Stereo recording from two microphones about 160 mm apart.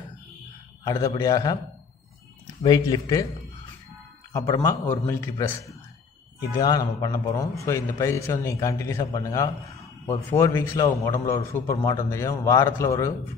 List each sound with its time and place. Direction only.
0.8 s a man's voice: 20° left (ahead or behind)
2.6 s a man's voice: 25° left (ahead or behind)
4.3 s a man's voice: 20° left (ahead or behind)